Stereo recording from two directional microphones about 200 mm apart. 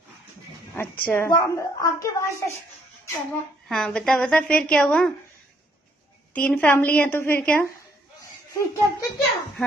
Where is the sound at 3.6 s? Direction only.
5° left (ahead or behind).